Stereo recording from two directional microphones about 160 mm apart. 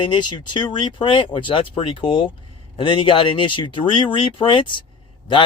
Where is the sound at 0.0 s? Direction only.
30° left (ahead or behind).